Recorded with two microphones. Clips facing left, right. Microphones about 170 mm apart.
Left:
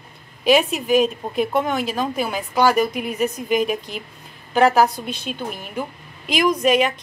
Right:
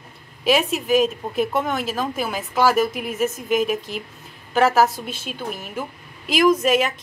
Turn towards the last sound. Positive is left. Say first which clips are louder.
# even
turn(degrees=0)  # may be behind; listen again after turning